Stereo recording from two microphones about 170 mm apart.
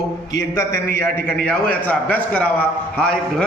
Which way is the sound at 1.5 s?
10° left (ahead or behind).